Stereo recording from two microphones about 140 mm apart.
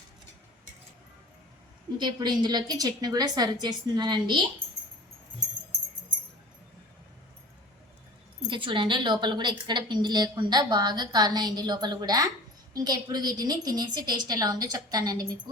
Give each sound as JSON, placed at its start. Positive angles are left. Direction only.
{"t": 2.0, "sound": "a woman's voice", "side_deg": -30}
{"t": 8.4, "sound": "a woman's voice", "side_deg": -35}